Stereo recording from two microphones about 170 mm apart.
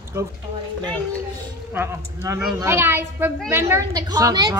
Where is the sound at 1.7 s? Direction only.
15° right (ahead or behind).